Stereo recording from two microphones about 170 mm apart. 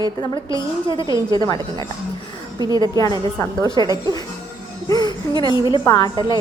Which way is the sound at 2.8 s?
20° left (ahead or behind).